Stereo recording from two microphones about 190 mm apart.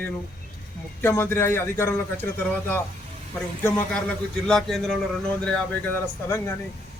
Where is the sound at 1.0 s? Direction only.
10° left (ahead or behind).